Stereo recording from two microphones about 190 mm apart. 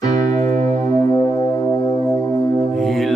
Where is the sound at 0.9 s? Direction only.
20° left (ahead or behind).